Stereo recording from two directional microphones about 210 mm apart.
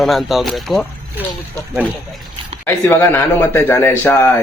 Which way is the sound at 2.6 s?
10° left (ahead or behind).